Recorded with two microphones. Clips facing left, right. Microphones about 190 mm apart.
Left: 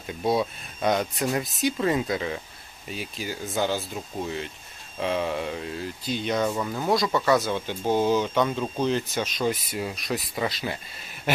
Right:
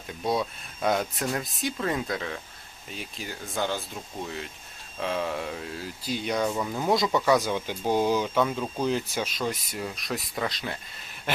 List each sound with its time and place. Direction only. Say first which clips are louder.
0.3 s speech: left 3 dB; centre (ahead or behind)
4.9 s speech: left 3 dB; centre (ahead or behind)
6.9 s speech: left 1 dB; 20° right (ahead or behind); by 10.8 s 5° left (ahead or behind)
11.3 s a sound: left 4 dB; 10° left (ahead or behind)